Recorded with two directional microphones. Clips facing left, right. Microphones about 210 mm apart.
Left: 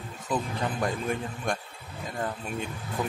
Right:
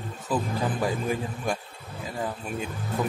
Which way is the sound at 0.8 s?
5° right (ahead or behind).